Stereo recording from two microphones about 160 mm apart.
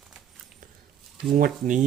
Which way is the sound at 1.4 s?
55° right (ahead or behind).